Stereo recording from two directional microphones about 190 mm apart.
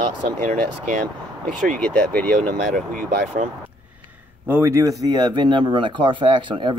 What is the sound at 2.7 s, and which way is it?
Speech, 45° right (ahead or behind).